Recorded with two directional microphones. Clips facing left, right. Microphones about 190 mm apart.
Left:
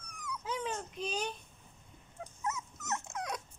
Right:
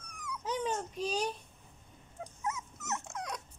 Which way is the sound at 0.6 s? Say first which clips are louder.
Right 3 dB; 35° right (ahead or behind).